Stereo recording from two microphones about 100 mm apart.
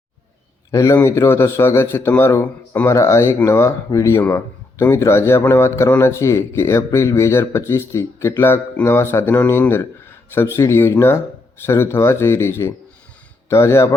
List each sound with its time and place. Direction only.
0.7 s a man's voice: 30° left (ahead or behind)